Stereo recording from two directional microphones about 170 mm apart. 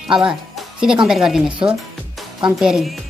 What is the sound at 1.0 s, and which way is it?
Speech, 5° right (ahead or behind).